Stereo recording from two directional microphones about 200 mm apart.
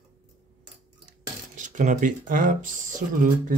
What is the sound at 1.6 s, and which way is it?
Speech, 40° right (ahead or behind).